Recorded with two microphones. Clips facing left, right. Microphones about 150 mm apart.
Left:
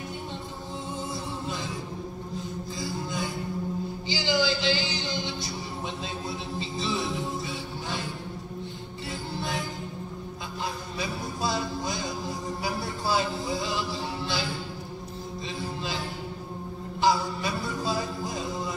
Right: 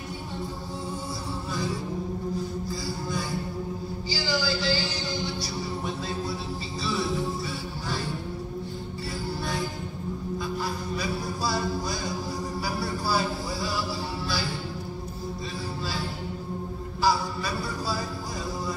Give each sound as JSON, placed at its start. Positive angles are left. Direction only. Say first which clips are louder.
{"t": 2.8, "sound": "music", "louder": "even", "side_deg": 20}
{"t": 6.8, "sound": "music", "louder": "right 2 dB", "side_deg": 20}
{"t": 11.0, "sound": "music", "louder": "left 1 dB", "side_deg": 20}
{"t": 17.0, "sound": "a sound", "louder": "left 1 dB", "side_deg": 20}